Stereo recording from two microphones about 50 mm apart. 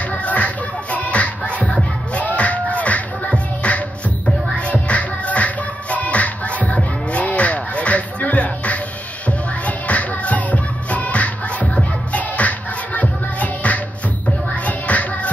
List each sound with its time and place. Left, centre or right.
0.1 s music: left